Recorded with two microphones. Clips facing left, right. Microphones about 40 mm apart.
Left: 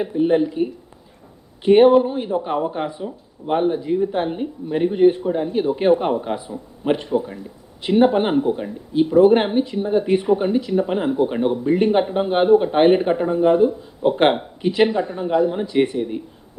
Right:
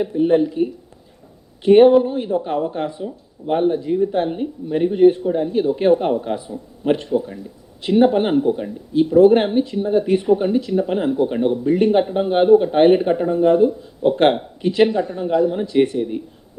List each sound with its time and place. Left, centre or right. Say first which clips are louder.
0.0 s speech: right 1 dB; centre